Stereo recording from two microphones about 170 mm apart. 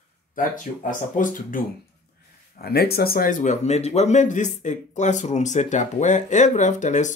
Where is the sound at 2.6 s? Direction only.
65° left (ahead or behind); by 7.1 s 45° left (ahead or behind).